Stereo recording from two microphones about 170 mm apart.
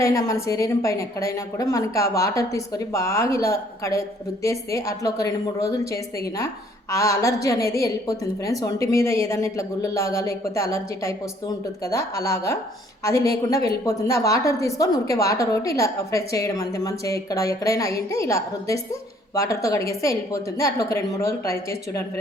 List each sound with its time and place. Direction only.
0.0 s a woman's voice: 20° left (ahead or behind)